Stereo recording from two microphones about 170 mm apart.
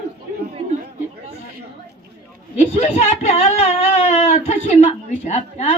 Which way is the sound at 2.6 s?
40° left (ahead or behind).